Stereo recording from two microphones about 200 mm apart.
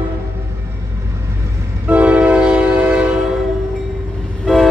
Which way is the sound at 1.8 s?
10° right (ahead or behind).